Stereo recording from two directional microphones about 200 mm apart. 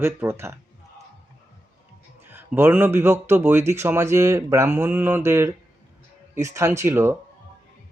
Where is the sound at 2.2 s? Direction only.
10° right (ahead or behind).